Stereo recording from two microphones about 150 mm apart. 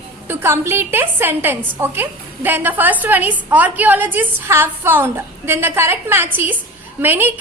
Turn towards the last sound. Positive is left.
turn(degrees=-15)  # may be behind; listen again after turning